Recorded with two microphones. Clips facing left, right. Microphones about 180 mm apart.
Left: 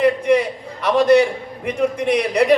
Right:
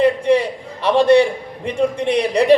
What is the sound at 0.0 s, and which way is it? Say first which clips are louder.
A man's voice: right 1 dB; 30° right (ahead or behind).